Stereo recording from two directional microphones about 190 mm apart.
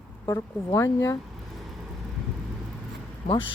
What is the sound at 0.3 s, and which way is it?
Speech, 15° left (ahead or behind).